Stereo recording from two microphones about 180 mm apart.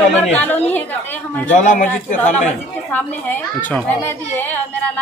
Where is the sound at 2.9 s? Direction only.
10° left (ahead or behind).